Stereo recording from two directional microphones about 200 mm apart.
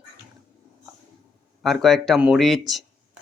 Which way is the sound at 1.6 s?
Centre (ahead or behind).